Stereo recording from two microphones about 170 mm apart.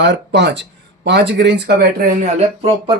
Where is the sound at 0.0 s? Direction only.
90° right; by 2.0 s 75° right (ahead or behind).